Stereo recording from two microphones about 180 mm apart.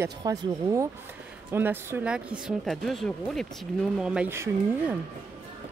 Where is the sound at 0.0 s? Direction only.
20° right (ahead or behind).